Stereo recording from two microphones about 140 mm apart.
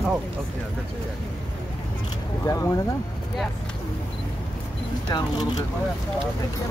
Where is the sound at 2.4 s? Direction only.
20° left (ahead or behind).